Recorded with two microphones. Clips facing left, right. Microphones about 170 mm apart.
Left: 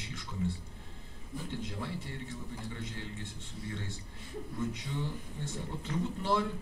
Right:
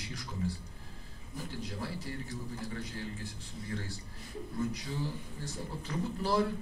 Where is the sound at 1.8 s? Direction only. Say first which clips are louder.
Right 1 dB; 35° right (ahead or behind).